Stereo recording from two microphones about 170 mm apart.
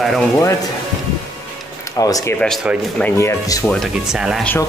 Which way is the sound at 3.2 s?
20° left (ahead or behind).